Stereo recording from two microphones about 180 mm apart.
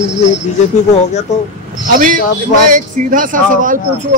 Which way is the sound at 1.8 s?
50° right (ahead or behind).